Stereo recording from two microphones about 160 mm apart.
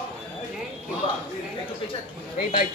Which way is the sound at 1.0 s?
35° left (ahead or behind).